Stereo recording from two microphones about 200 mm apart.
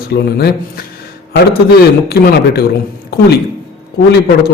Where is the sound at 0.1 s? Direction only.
50° left (ahead or behind).